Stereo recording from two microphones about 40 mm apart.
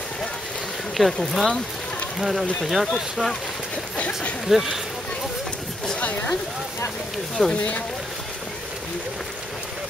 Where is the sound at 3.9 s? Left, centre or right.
Left.